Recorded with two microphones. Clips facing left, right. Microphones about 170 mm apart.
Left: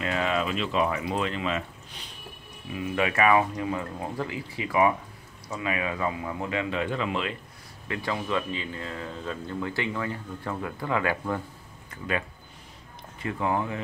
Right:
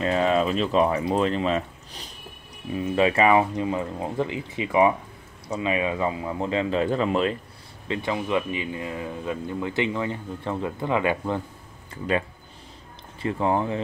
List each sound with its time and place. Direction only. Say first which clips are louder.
0.0 s speech: right 6 dB; 35° right (ahead or behind)
7.9 s speech: right 4 dB; 20° right (ahead or behind)
11.9 s speech: right 5 dB; 30° right (ahead or behind)